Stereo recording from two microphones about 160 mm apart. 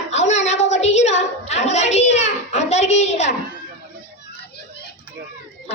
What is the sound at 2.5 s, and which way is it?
Speech, 45° left (ahead or behind).